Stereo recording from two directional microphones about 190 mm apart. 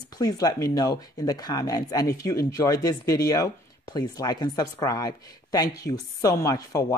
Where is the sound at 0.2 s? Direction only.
20° left (ahead or behind).